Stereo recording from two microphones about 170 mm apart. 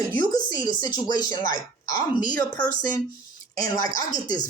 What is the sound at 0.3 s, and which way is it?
Speech, 25° left (ahead or behind).